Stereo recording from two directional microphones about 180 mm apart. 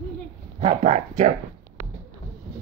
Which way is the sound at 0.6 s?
40° right (ahead or behind).